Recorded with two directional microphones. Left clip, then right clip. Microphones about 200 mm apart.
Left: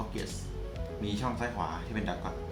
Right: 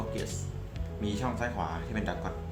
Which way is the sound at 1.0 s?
25° right (ahead or behind).